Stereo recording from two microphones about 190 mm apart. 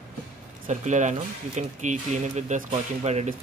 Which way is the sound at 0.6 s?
40° right (ahead or behind).